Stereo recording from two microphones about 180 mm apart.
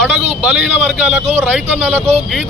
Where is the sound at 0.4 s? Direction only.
5° right (ahead or behind).